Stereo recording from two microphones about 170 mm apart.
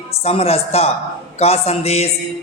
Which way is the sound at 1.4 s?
35° left (ahead or behind).